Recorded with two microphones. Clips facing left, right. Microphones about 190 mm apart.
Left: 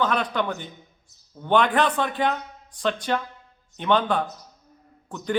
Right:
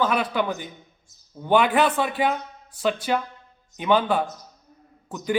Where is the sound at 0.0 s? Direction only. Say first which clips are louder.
Right 1 dB; 5° right (ahead or behind).